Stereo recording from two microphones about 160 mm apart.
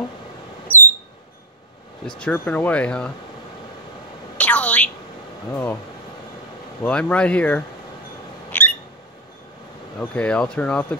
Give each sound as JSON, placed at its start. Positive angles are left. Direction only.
{"t": 2.1, "sound": "speech", "side_deg": 10}
{"t": 4.4, "sound": "a sound", "side_deg": 10}
{"t": 5.5, "sound": "speech", "side_deg": 15}
{"t": 6.8, "sound": "speech", "side_deg": 5}
{"t": 8.5, "sound": "a sound", "side_deg": 10}
{"t": 9.9, "sound": "speech", "side_deg": 5}